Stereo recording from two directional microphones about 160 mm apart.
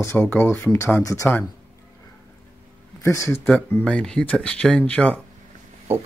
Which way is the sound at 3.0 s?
20° left (ahead or behind).